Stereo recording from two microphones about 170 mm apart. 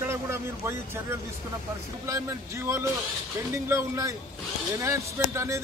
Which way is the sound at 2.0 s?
20° right (ahead or behind).